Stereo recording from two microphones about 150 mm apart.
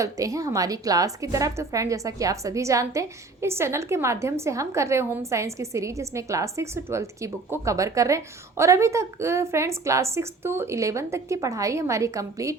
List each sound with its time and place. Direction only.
0.0 s a woman's voice: 20° right (ahead or behind)